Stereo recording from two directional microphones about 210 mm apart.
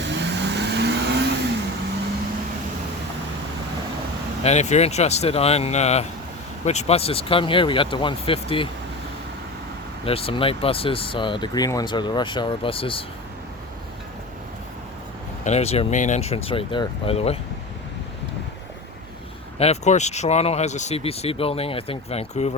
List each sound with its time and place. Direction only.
0.0 s vehicle: 55° right (ahead or behind)
4.4 s speech: 30° left (ahead or behind)
10.1 s speech: 25° left (ahead or behind)
15.4 s speech: 30° left (ahead or behind)
19.5 s speech: 30° left (ahead or behind)